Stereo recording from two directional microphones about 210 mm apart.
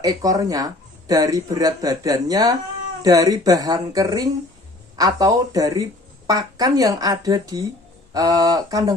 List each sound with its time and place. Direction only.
0.0 s speech: 15° right (ahead or behind)